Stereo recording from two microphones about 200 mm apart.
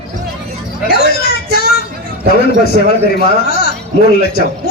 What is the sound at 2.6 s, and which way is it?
A man's voice, 50° left (ahead or behind).